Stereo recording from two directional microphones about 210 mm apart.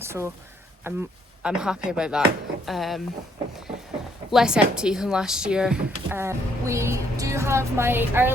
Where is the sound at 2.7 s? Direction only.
Centre (ahead or behind).